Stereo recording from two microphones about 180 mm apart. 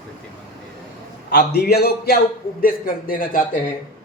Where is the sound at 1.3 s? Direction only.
65° left (ahead or behind); by 3.6 s 50° left (ahead or behind).